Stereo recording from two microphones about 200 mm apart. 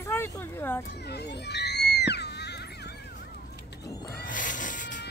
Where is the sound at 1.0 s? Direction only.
55° left (ahead or behind).